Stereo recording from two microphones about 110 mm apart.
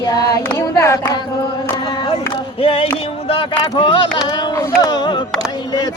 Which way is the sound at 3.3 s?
50° left (ahead or behind).